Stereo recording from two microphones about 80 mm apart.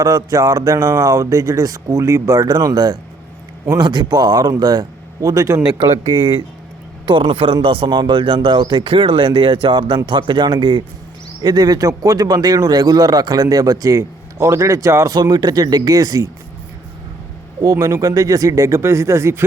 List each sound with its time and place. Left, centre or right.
0.0 s speech: right
2.5 s speech: right
5.7 s speech: right
11.4 s speech: right
15.1 s speech: right
17.6 s speech: right